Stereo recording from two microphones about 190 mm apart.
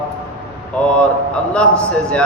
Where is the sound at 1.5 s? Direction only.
5° left (ahead or behind).